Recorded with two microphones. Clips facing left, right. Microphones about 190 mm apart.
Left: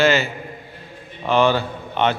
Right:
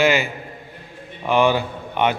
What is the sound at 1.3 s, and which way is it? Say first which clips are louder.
Speech: even; 15° right (ahead or behind).